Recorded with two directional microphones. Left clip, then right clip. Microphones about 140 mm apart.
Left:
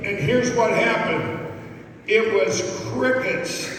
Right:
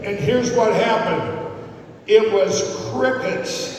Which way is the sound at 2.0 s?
40° right (ahead or behind).